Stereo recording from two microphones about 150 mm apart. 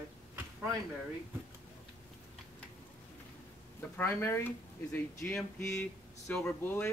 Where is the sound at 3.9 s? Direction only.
15° left (ahead or behind).